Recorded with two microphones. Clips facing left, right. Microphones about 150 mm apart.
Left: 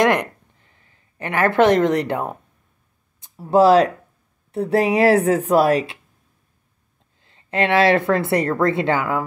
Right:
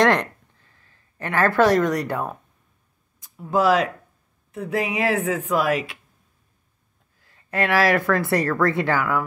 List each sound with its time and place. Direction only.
0.0 s a sound: 15° left (ahead or behind)
3.2 s a woman's voice: 30° left (ahead or behind)
7.2 s speech: 20° left (ahead or behind)